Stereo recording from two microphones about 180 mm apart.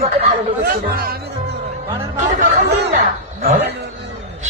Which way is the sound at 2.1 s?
40° right (ahead or behind).